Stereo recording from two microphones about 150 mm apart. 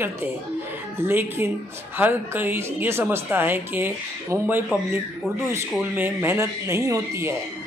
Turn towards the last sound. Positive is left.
turn(degrees=-15)  # may be behind; listen again after turning